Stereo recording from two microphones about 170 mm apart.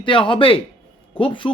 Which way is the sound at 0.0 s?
30° left (ahead or behind).